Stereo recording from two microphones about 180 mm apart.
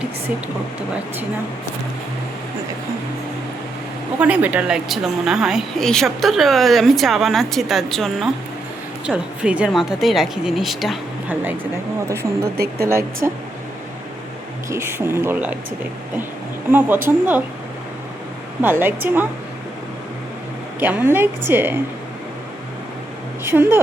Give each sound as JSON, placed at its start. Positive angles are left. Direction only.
{"t": 4.2, "sound": "a woman's voice", "side_deg": -10}
{"t": 14.7, "sound": "a woman's voice", "side_deg": -15}
{"t": 17.1, "sound": "a woman's voice", "side_deg": -10}
{"t": 18.6, "sound": "a woman's voice", "side_deg": -10}
{"t": 20.7, "sound": "a woman's voice", "side_deg": -10}
{"t": 23.4, "sound": "speech", "side_deg": -15}